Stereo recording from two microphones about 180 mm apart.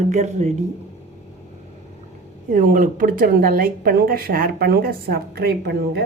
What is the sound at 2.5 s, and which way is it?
Speech, 50° right (ahead or behind).